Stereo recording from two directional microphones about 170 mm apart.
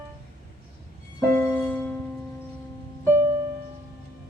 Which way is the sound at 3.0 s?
15° right (ahead or behind).